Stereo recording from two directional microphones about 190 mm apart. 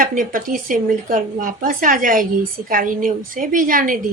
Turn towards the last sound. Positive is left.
turn(degrees=-45)  # may be behind; listen again after turning